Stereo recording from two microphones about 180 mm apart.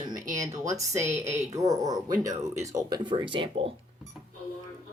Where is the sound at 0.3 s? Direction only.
15° right (ahead or behind).